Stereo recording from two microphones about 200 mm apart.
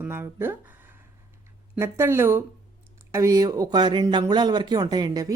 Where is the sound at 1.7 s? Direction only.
15° right (ahead or behind).